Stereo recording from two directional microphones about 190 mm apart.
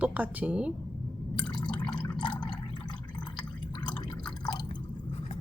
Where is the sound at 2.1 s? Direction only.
25° left (ahead or behind).